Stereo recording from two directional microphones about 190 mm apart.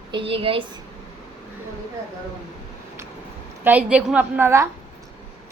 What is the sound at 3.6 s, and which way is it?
A woman's voice, 5° right (ahead or behind).